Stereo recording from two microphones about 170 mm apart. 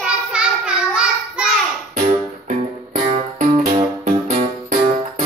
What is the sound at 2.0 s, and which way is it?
Music, 50° right (ahead or behind).